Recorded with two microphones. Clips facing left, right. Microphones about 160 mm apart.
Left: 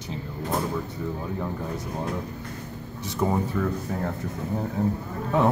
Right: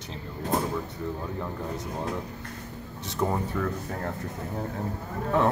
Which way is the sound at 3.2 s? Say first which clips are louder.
Left 2 dB; 5° left (ahead or behind).